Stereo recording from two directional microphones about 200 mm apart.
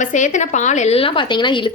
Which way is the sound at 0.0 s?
40° left (ahead or behind).